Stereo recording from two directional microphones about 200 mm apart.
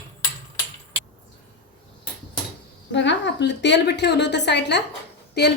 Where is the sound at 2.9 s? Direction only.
60° left (ahead or behind).